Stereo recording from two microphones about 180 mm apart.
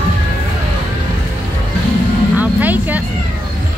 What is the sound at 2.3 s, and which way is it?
Vehicle, 10° right (ahead or behind).